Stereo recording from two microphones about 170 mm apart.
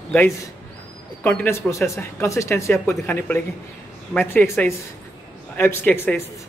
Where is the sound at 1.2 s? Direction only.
15° left (ahead or behind).